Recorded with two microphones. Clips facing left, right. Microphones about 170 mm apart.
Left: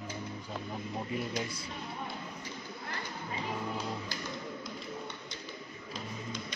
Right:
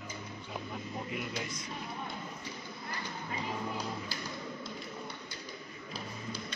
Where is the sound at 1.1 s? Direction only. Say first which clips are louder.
Left 3 dB; 35° left (ahead or behind).